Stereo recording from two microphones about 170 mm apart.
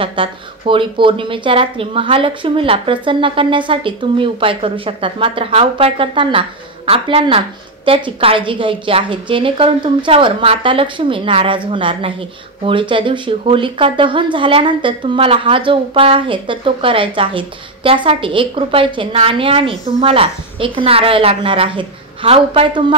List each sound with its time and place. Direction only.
0.0 s a woman's voice: 30° right (ahead or behind)